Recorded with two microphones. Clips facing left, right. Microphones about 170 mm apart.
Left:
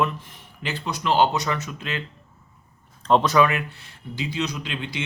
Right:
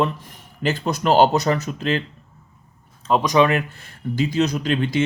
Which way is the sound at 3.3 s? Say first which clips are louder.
Right 3 dB; 35° right (ahead or behind).